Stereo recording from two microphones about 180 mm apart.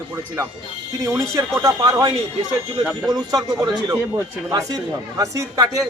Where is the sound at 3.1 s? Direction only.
20° right (ahead or behind).